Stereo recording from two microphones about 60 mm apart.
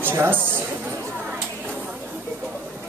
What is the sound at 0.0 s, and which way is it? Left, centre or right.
Speech, right.